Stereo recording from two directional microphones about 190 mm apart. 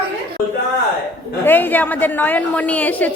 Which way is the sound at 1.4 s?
10° left (ahead or behind).